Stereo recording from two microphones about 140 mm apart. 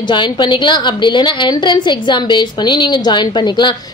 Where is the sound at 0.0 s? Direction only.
35° left (ahead or behind).